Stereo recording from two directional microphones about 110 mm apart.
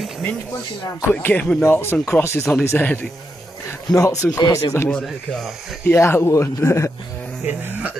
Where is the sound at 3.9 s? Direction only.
30° left (ahead or behind).